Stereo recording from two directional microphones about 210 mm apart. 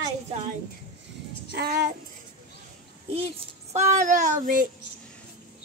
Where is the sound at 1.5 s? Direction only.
50° right (ahead or behind).